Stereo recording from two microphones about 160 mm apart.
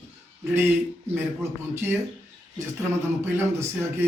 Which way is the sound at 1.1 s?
15° right (ahead or behind).